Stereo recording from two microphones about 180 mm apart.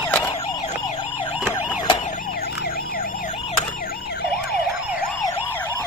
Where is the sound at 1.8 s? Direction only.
40° left (ahead or behind).